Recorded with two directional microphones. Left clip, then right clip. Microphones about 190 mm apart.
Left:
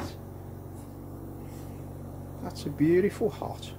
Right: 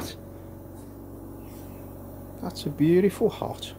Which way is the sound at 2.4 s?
25° right (ahead or behind).